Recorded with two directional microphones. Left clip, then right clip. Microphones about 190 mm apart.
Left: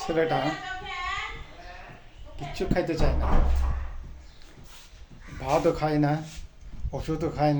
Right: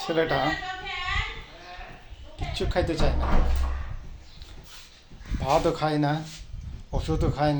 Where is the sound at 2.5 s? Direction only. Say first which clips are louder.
Right 1 dB; 10° left (ahead or behind).